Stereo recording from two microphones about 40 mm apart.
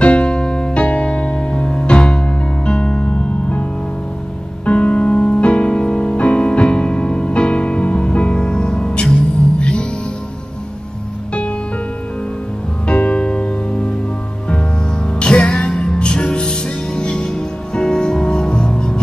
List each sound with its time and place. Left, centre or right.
0.0 s music: left
4.6 s music: left
12.8 s music: left
15.1 s music: left